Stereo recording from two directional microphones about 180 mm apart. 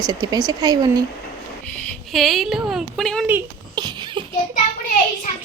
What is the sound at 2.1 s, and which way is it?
A woman's voice, centre (ahead or behind).